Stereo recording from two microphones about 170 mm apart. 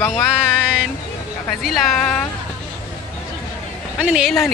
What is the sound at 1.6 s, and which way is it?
Speech, centre (ahead or behind).